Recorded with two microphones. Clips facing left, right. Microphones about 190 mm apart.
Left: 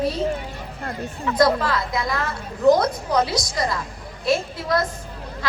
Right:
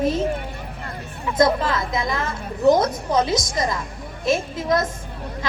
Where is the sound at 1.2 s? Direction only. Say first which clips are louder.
Even; 20° right (ahead or behind).